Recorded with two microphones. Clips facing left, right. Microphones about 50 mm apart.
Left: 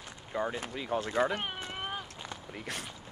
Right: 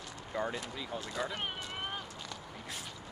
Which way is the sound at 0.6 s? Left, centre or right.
Left.